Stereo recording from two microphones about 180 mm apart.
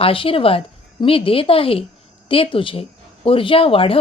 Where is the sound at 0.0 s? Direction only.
30° left (ahead or behind).